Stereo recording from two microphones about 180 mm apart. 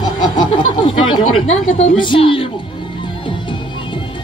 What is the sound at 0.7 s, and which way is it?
Chatter, 30° left (ahead or behind).